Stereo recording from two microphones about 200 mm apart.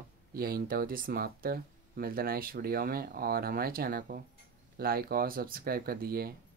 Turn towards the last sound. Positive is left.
turn(degrees=-50)  # may be behind; listen again after turning